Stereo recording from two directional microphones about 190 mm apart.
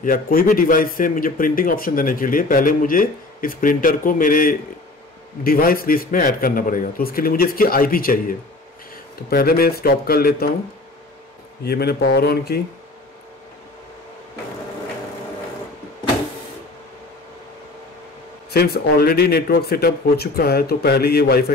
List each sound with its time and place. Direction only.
0.0 s a man's voice: 50° left (ahead or behind)
11.6 s speech: 55° left (ahead or behind)
18.5 s speech: 55° left (ahead or behind)